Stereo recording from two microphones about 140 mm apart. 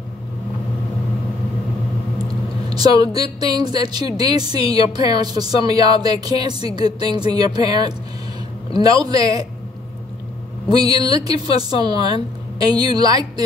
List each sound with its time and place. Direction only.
2.7 s a woman's voice: 30° right (ahead or behind)
10.7 s a woman's voice: 30° right (ahead or behind)